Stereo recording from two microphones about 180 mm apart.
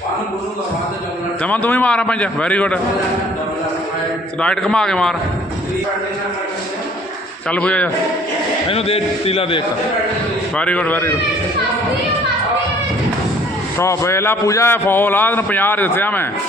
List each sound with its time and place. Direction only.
1.4 s a man's voice: 10° left (ahead or behind)
4.4 s a man's voice: 5° left (ahead or behind)
7.5 s a man's voice: 10° left (ahead or behind)
8.6 s a man's voice: 35° left (ahead or behind)
10.6 s a man's voice: 5° left (ahead or behind)
13.7 s a man's voice: 15° left (ahead or behind)